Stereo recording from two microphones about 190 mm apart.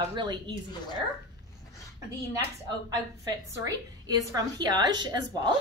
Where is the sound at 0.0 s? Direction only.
25° right (ahead or behind).